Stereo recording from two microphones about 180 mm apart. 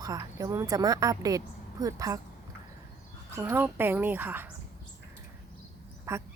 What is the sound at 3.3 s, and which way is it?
Speech, 15° right (ahead or behind).